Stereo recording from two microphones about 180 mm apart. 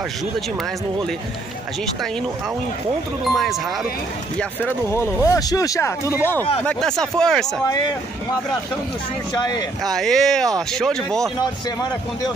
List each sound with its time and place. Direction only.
3.3 s speech: centre (ahead or behind)
4.4 s speech: 10° left (ahead or behind)
6.6 s speech: 5° left (ahead or behind)
9.4 s speech: 25° left (ahead or behind)
9.8 s speech: centre (ahead or behind)